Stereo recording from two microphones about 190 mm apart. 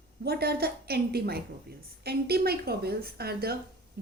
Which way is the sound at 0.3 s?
55° right (ahead or behind).